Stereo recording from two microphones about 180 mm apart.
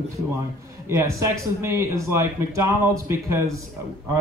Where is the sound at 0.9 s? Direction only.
15° right (ahead or behind).